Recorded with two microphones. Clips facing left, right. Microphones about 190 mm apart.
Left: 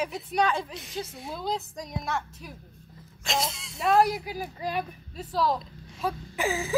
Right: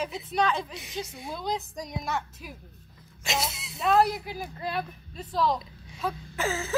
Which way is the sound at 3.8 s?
10° left (ahead or behind).